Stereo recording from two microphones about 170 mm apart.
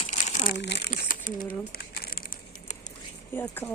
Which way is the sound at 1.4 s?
65° left (ahead or behind).